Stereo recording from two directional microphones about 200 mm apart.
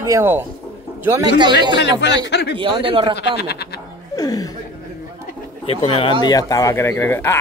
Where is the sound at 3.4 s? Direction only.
55° left (ahead or behind).